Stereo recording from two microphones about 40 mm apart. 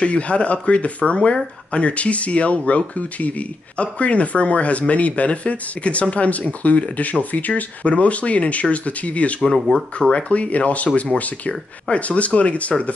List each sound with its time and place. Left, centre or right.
0.0 s speech: left
9.4 s speech: centre
10.1 s speech: left